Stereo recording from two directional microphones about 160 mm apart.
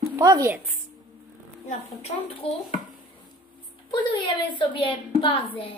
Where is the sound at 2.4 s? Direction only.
35° left (ahead or behind).